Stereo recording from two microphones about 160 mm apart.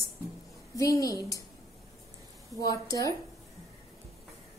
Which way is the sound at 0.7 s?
20° left (ahead or behind).